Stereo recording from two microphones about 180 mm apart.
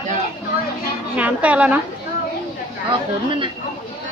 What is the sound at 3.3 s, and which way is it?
Speech, 30° right (ahead or behind).